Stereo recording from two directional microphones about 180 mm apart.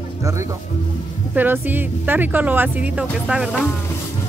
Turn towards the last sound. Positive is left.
turn(degrees=-5)  # may be behind; listen again after turning